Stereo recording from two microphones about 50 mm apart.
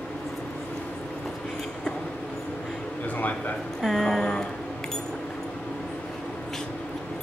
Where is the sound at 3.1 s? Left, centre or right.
Left.